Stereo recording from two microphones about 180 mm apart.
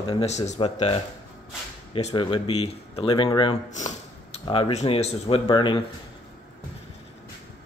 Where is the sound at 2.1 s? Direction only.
25° left (ahead or behind).